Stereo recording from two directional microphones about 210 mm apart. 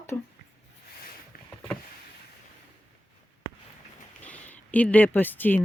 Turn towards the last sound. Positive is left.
turn(degrees=10)  # may be behind; listen again after turning